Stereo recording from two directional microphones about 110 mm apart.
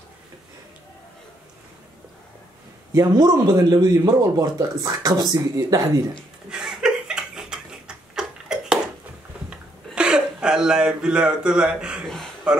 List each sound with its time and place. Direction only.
2.9 s a man's voice: 35° right (ahead or behind)
6.5 s tick-tock: 5° right (ahead or behind)
9.5 s a sound: 10° right (ahead or behind)
12.5 s speech: 5° right (ahead or behind)